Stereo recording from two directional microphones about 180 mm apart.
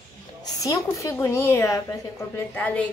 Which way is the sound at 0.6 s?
15° left (ahead or behind).